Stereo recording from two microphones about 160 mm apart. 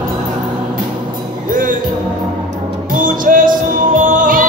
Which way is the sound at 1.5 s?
55° right (ahead or behind).